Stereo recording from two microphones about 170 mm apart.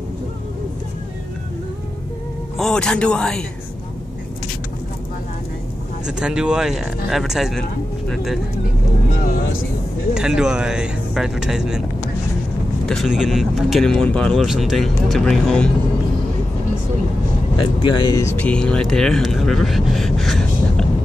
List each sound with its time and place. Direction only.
2.5 s speech: 5° left (ahead or behind)
6.0 s speech: 5° right (ahead or behind)
10.1 s speech: 5° right (ahead or behind)
12.8 s speech: centre (ahead or behind)
17.6 s speech: 25° left (ahead or behind)
18.2 s speech: 5° left (ahead or behind)